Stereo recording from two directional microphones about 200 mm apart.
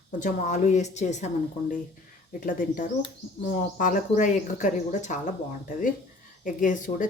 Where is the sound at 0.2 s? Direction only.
40° left (ahead or behind).